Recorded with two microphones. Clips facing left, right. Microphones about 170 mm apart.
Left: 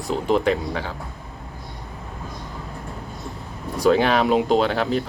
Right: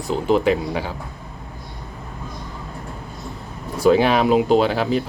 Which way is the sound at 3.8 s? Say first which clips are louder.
Right 2 dB; 5° right (ahead or behind).